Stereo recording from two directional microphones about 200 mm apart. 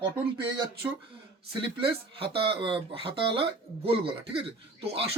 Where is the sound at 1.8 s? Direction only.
25° right (ahead or behind).